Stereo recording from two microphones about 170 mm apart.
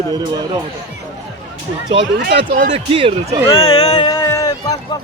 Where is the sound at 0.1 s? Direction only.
25° right (ahead or behind).